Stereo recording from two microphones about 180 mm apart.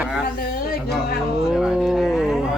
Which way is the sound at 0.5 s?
55° left (ahead or behind).